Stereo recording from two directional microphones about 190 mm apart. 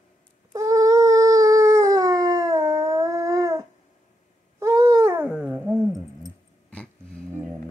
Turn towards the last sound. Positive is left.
turn(degrees=5)  # may be behind; listen again after turning